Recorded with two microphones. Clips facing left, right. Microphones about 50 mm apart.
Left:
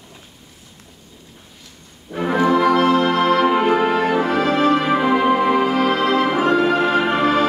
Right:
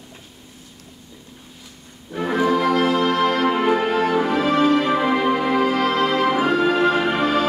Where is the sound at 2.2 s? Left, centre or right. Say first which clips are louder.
Left 3 dB; centre.